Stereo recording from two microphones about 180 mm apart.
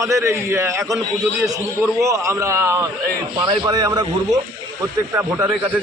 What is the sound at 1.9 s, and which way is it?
A man's voice, 15° right (ahead or behind).